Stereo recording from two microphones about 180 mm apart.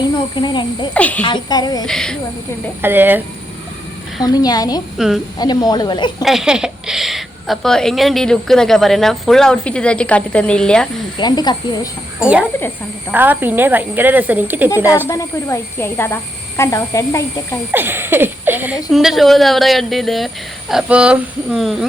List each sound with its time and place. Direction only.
0.3 s speech: 25° left (ahead or behind)
0.9 s speech: 10° left (ahead or behind)
1.2 s speech: 25° left (ahead or behind)
1.9 s a woman's voice: 5° left (ahead or behind)
2.8 s speech: 10° right (ahead or behind)
4.2 s speech: 20° left (ahead or behind)
4.9 s a woman's voice: centre (ahead or behind)
5.4 s speech: 20° left (ahead or behind)
6.2 s a woman's voice: 5° right (ahead or behind)
11.2 s speech: 25° left (ahead or behind)
12.4 s speech: 10° left (ahead or behind)
13.1 s speech: 10° right (ahead or behind)
15.0 s speech: 15° left (ahead or behind)
17.7 s a woman's voice: 10° right (ahead or behind)